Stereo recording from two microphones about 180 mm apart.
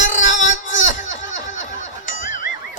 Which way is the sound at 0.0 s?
45° left (ahead or behind).